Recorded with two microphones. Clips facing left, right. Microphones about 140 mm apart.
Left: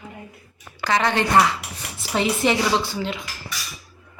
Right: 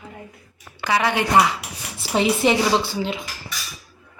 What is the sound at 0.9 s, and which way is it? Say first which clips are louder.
Speech: even; 10° right (ahead or behind).